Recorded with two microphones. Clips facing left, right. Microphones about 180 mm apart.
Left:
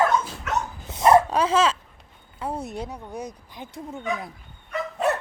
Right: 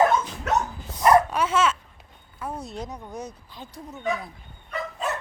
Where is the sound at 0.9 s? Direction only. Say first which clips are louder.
Left 2 dB; 25° left (ahead or behind).